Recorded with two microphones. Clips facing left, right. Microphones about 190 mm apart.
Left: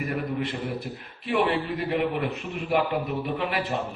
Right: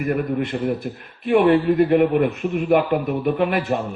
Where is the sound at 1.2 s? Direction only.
50° right (ahead or behind).